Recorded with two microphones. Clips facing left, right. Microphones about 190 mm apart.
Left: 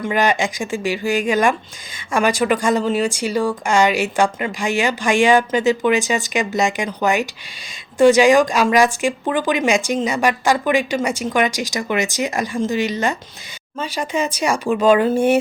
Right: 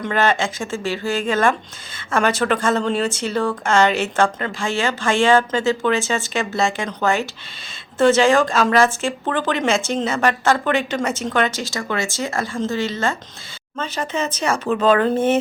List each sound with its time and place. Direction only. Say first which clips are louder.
0.0 s speech: left 1 dB; 15° left (ahead or behind)